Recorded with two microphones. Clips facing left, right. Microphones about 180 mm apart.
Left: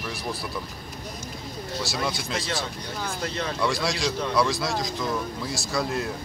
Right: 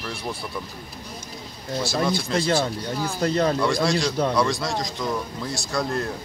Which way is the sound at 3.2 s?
40° right (ahead or behind).